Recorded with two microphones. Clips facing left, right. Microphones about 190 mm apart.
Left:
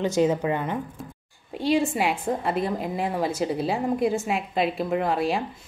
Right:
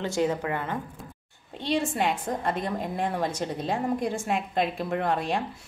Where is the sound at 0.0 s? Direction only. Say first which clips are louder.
Left 4 dB; 20° left (ahead or behind).